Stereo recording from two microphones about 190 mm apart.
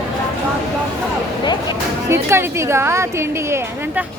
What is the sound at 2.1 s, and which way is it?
A woman's voice, 15° right (ahead or behind).